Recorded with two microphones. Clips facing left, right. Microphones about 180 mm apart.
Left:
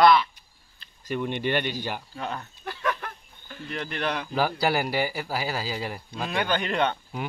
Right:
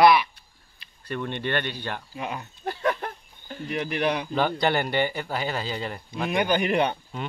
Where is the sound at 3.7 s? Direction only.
15° right (ahead or behind).